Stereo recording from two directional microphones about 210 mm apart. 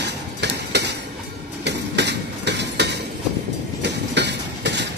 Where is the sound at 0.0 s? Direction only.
55° right (ahead or behind).